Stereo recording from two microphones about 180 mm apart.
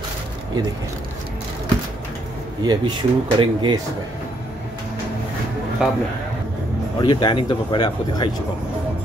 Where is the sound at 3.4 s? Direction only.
25° right (ahead or behind).